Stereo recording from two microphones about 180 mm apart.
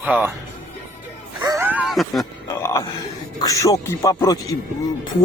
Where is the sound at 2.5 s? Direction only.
15° left (ahead or behind).